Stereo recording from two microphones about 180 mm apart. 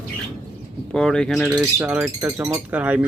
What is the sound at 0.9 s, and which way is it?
Speech, 5° left (ahead or behind).